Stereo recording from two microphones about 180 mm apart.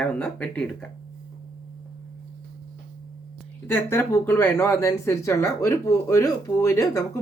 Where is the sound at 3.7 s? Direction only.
10° left (ahead or behind).